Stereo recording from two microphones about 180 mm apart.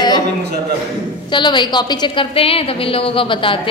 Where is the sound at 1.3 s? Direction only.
25° left (ahead or behind).